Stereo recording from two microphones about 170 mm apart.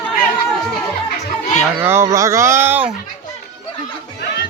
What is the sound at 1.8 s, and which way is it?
Speech, 15° right (ahead or behind).